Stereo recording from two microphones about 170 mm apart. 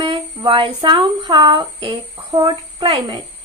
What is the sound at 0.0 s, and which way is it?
A woman's voice, 30° right (ahead or behind).